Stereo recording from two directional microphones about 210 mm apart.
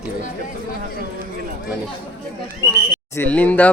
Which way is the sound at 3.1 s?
10° left (ahead or behind).